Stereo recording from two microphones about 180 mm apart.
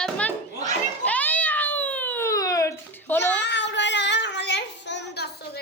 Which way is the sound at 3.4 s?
75° left (ahead or behind).